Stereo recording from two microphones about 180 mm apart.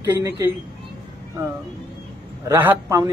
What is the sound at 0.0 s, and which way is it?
Speech, 15° right (ahead or behind).